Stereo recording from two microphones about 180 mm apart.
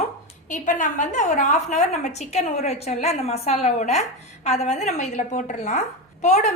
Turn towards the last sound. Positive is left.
turn(degrees=40)  # may be behind; listen again after turning